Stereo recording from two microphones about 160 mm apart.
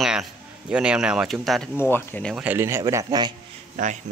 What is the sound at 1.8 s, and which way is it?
Speech, 15° left (ahead or behind).